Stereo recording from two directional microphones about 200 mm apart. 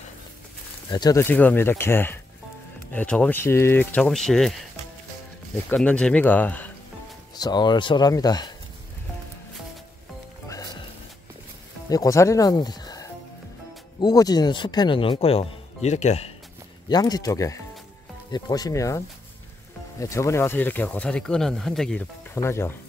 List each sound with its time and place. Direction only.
0.8 s speech: 20° left (ahead or behind); by 4.6 s centre (ahead or behind)
5.7 s speech: 5° left (ahead or behind)
7.3 s speech: 20° left (ahead or behind)
10.5 s music: 20° left (ahead or behind)
11.9 s speech: 15° left (ahead or behind); by 16.3 s 35° left (ahead or behind)
16.9 s speech: 20° left (ahead or behind); by 22.0 s centre (ahead or behind)
22.3 s speech: 15° left (ahead or behind)